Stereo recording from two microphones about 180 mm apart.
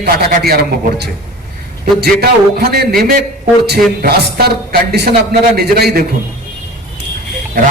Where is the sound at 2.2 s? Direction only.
60° right (ahead or behind).